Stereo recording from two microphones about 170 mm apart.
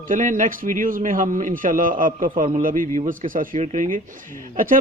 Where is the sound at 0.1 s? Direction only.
50° right (ahead or behind).